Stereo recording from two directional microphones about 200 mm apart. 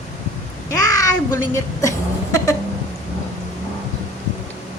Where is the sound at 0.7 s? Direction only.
15° left (ahead or behind).